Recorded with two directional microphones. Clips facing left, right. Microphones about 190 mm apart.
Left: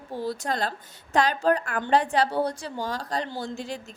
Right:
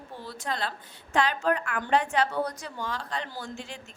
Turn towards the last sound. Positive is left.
turn(degrees=40)  # may be behind; listen again after turning